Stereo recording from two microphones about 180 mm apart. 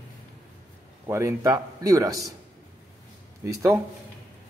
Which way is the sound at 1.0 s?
15° right (ahead or behind).